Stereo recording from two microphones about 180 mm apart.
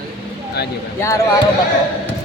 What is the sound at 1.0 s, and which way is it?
Speech, 15° left (ahead or behind).